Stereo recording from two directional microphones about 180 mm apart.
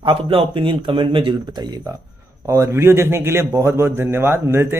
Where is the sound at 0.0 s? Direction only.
30° right (ahead or behind).